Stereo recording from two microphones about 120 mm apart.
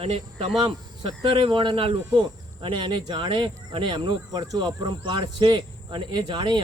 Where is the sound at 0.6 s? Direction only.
40° right (ahead or behind).